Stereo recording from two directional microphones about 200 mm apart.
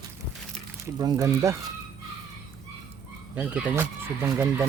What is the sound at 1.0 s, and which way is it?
Speech, 15° right (ahead or behind).